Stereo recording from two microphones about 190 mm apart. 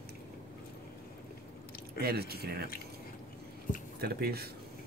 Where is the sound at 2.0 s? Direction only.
55° right (ahead or behind).